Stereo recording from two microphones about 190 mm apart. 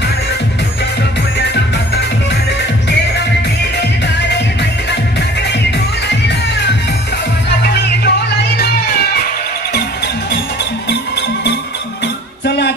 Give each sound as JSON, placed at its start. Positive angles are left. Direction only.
{"t": 7.7, "sound": "music", "side_deg": 60}
{"t": 12.4, "sound": "music", "side_deg": 60}